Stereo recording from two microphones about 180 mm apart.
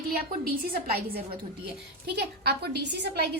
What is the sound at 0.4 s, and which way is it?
A woman's voice, 55° right (ahead or behind).